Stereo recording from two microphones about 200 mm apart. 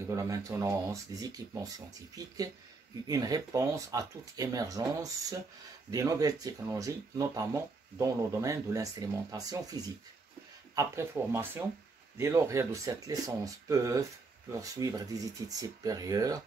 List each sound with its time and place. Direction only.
0.1 s speech: 15° right (ahead or behind)